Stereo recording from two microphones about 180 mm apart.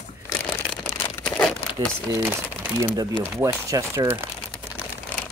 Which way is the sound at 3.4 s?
15° right (ahead or behind).